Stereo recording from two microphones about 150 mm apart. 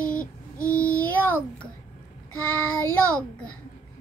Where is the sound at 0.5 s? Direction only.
10° left (ahead or behind).